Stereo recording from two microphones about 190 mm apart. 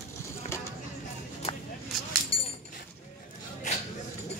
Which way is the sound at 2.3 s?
30° left (ahead or behind).